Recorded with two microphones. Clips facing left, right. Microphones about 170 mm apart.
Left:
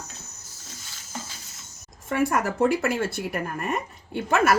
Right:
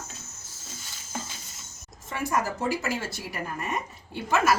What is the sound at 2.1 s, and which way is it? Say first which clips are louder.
Speech: left 5 dB; 60° left (ahead or behind).